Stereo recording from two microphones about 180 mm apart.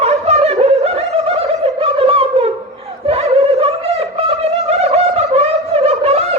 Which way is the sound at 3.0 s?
35° right (ahead or behind).